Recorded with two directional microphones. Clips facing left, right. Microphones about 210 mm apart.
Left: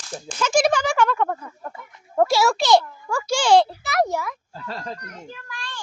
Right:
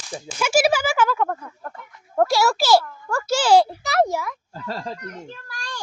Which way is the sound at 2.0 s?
Centre (ahead or behind).